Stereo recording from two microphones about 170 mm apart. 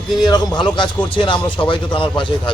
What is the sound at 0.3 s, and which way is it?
A man's voice, 25° left (ahead or behind).